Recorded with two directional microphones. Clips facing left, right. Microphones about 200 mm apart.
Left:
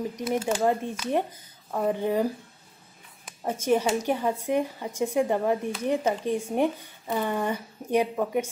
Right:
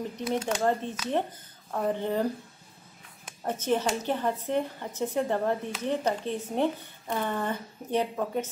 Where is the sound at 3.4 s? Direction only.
10° left (ahead or behind).